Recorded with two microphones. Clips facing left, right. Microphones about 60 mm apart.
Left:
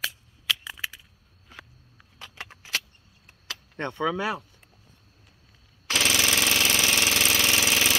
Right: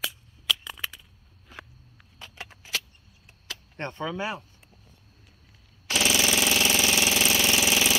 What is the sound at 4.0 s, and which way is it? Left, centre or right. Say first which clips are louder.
Speech: left 5 dB; left.